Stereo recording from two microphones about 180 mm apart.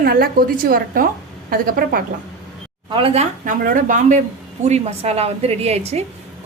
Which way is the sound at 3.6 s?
50° right (ahead or behind).